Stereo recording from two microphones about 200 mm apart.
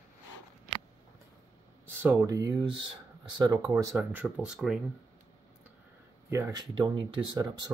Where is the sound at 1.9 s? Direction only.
10° right (ahead or behind).